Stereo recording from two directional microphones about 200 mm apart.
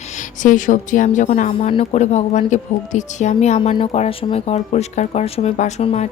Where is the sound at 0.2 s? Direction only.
40° left (ahead or behind).